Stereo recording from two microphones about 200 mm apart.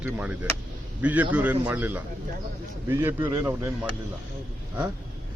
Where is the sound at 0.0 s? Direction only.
5° right (ahead or behind).